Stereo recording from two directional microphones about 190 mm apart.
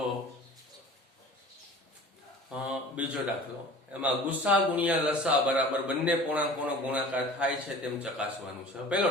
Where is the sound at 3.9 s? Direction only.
5° right (ahead or behind).